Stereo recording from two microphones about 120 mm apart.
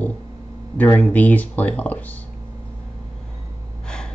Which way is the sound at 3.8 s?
5° left (ahead or behind).